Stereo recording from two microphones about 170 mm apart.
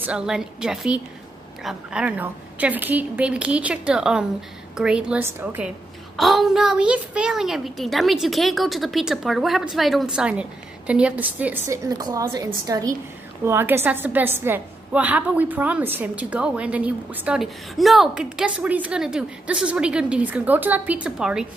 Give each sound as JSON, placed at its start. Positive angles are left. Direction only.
{"t": 0.0, "sound": "a woman's voice", "side_deg": -5}
{"t": 6.1, "sound": "a woman's voice", "side_deg": 0}